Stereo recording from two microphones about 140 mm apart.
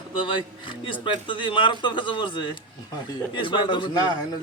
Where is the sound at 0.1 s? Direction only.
40° left (ahead or behind).